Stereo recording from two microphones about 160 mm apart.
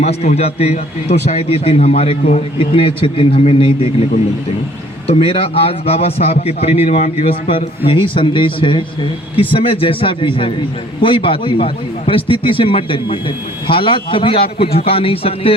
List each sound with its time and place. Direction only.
0.0 s a man's voice: 40° left (ahead or behind)
5.0 s a man's voice: 35° left (ahead or behind)